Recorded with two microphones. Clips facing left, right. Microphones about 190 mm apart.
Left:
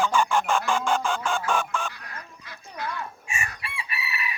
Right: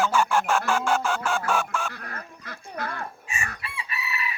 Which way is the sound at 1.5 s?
10° right (ahead or behind).